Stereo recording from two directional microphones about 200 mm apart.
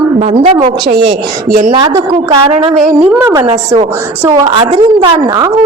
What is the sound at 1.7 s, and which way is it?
A woman's voice, 20° right (ahead or behind).